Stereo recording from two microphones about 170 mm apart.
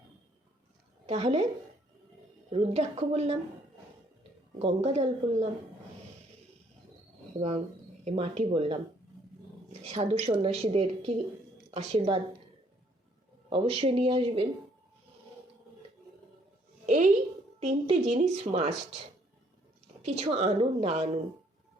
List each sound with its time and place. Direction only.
1.0 s a woman's voice: 40° right (ahead or behind)
2.5 s a woman's voice: 40° right (ahead or behind)
4.6 s a woman's voice: 40° right (ahead or behind)
7.3 s a woman's voice: 35° right (ahead or behind)
9.8 s a woman's voice: 40° right (ahead or behind)
13.5 s a woman's voice: 35° right (ahead or behind)
16.8 s a sound: 45° right (ahead or behind)
17.6 s a woman's voice: 40° right (ahead or behind)
20.1 s a woman's voice: 40° right (ahead or behind)